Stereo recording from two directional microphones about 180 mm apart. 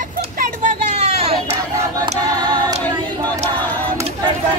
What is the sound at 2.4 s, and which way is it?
Choir, 25° right (ahead or behind).